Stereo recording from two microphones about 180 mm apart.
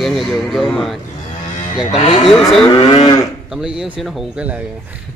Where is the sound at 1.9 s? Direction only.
35° left (ahead or behind).